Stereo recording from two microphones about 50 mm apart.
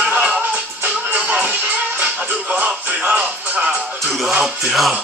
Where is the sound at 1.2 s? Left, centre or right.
Right.